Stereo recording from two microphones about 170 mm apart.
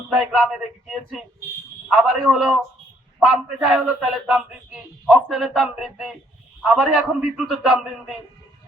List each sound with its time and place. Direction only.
0.1 s a man's voice: 5° right (ahead or behind)